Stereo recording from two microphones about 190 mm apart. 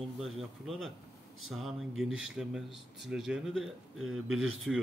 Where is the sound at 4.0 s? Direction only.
90° right.